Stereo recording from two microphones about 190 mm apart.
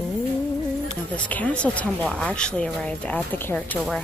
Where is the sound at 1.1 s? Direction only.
5° left (ahead or behind).